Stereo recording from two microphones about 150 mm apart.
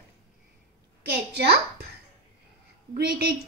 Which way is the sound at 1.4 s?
90° right.